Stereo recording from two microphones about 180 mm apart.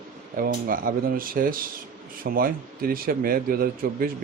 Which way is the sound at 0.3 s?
55° right (ahead or behind).